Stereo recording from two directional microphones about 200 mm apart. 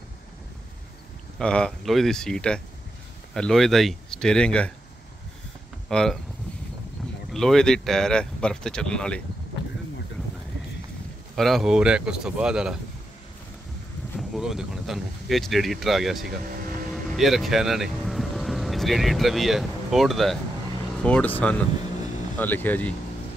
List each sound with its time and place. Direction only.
1.4 s speech: 5° left (ahead or behind)
5.9 s speech: 5° left (ahead or behind)
7.3 s speech: 5° left (ahead or behind)
11.3 s speech: centre (ahead or behind)
14.1 s speech: centre (ahead or behind)
16.3 s speech: 45° right (ahead or behind)
16.9 s speech: centre (ahead or behind)